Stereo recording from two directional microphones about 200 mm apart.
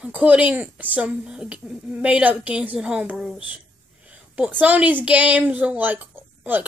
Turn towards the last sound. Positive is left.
turn(degrees=-10)  # may be behind; listen again after turning